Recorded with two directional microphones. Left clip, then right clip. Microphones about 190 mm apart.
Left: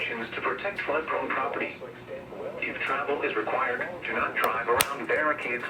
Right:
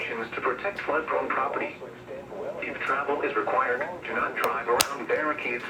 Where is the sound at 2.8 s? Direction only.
Centre (ahead or behind).